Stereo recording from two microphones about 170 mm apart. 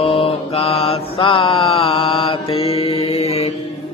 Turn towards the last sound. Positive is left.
turn(degrees=35)  # may be behind; listen again after turning